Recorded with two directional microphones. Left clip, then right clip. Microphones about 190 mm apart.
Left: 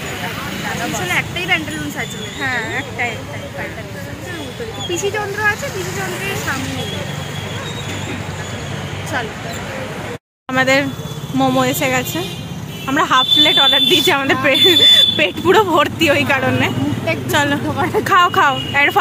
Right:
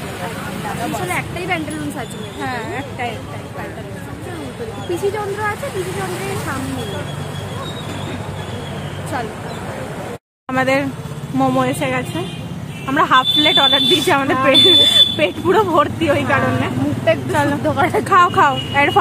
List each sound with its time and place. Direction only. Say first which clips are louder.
1.1 s speech: left 4 dB; 20° right (ahead or behind)
2.4 s speech: left 4 dB; 10° right (ahead or behind)
10.5 s speech: left 2 dB; centre (ahead or behind)
17.7 s speech: right 3 dB; 30° right (ahead or behind)
18.0 s speech: left 1 dB; centre (ahead or behind)